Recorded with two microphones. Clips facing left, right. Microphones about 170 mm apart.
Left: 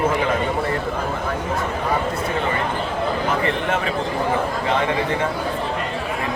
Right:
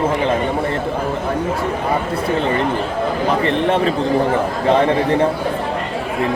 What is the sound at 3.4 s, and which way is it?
A man's voice, 35° right (ahead or behind).